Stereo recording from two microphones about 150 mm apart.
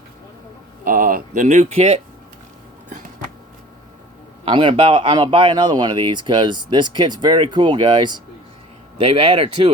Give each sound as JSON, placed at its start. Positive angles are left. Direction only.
{"t": 0.9, "sound": "speech", "side_deg": -65}
{"t": 4.4, "sound": "speech", "side_deg": -35}
{"t": 9.0, "sound": "speech", "side_deg": -40}